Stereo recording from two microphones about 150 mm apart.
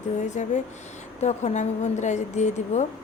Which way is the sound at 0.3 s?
55° left (ahead or behind).